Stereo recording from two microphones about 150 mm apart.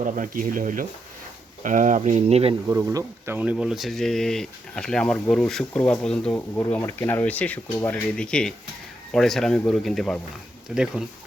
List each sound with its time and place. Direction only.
0.0 s speech: 60° right (ahead or behind); by 2.6 s 40° right (ahead or behind)
2.6 s speech: 20° right (ahead or behind); by 10.8 s 5° right (ahead or behind)